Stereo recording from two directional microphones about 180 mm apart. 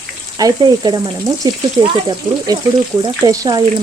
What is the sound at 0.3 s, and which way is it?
A woman's voice, 20° right (ahead or behind).